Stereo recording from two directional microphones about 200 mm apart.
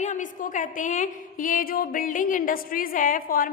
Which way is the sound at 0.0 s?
40° left (ahead or behind).